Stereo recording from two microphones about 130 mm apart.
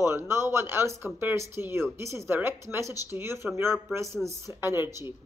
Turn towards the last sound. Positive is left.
turn(degrees=-20)  # may be behind; listen again after turning